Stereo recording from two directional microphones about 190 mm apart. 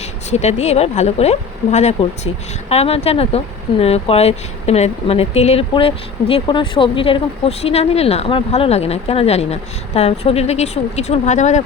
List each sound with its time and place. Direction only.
0.3 s speech: 35° left (ahead or behind)